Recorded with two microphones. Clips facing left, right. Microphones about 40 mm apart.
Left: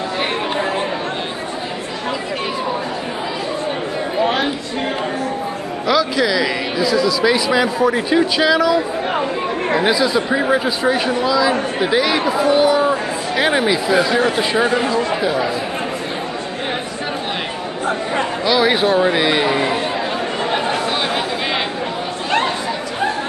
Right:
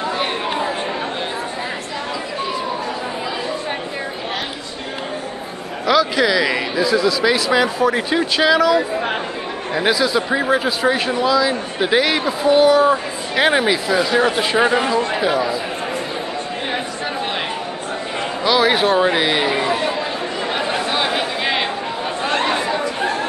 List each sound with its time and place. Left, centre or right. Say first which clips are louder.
5.9 s a man's voice: right 1 dB; centre
7.5 s speech: left 1 dB; centre
9.8 s a man's voice: right 2 dB; centre
14.6 s speech: right 2 dB; right
18.4 s a sound: right 1 dB; centre
18.9 s a man's voice: left 1 dB; centre
20.5 s a sound: even; centre